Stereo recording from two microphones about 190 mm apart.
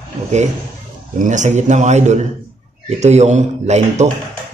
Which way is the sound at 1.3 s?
40° right (ahead or behind).